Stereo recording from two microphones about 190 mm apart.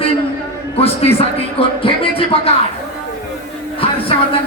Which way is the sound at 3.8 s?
30° left (ahead or behind).